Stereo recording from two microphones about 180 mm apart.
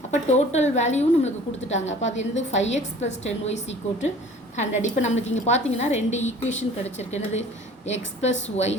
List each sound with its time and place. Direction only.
0.1 s a woman's voice: 40° left (ahead or behind)
8.4 s a woman's voice: 40° left (ahead or behind)